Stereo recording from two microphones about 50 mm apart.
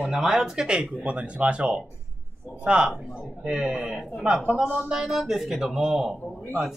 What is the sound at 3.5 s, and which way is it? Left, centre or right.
Speech, centre.